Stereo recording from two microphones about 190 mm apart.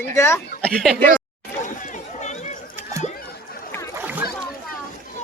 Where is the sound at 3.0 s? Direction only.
50° left (ahead or behind).